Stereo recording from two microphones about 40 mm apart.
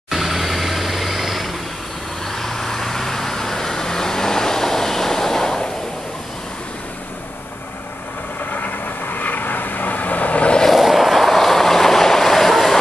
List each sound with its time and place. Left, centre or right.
0.1 s vehicle: centre
2.2 s vehicle: centre
8.4 s vehicle: left
10.7 s vehicle: centre